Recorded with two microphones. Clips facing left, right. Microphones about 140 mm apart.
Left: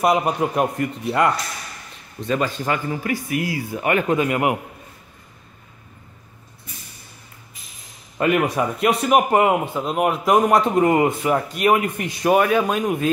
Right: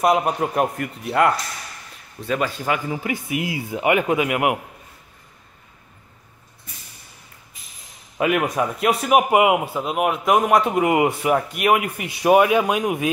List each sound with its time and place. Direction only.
0.0 s a man's voice: centre (ahead or behind)
3.0 s speech: 20° right (ahead or behind)
8.2 s speech: centre (ahead or behind)